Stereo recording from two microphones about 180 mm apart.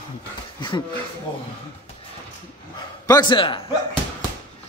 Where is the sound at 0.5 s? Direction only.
25° left (ahead or behind).